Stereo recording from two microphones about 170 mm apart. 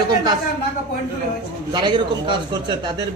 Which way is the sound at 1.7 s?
25° right (ahead or behind).